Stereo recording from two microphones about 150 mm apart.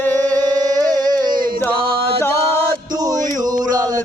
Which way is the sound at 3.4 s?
25° right (ahead or behind).